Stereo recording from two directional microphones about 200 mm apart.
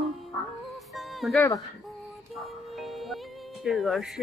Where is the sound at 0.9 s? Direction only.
Centre (ahead or behind).